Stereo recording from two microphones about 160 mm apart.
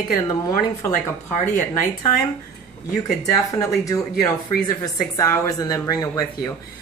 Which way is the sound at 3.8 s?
20° left (ahead or behind).